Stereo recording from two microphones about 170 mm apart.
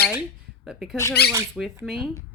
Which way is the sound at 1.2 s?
70° left (ahead or behind).